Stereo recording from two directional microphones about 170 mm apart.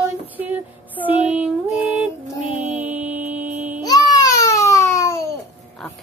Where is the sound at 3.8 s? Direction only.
20° left (ahead or behind).